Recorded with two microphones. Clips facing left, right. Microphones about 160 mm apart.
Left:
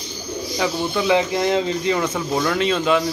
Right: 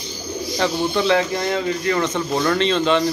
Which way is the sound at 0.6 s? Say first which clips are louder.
Right 2 dB; 5° left (ahead or behind).